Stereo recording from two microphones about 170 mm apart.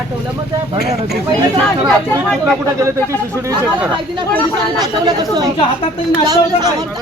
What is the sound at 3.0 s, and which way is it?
Speech, 15° right (ahead or behind).